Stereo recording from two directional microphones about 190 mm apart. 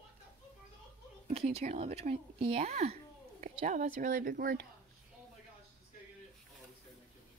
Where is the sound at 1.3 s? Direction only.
35° right (ahead or behind); by 4.6 s 50° right (ahead or behind).